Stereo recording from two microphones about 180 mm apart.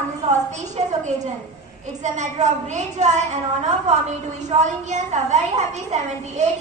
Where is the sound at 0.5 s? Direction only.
40° right (ahead or behind).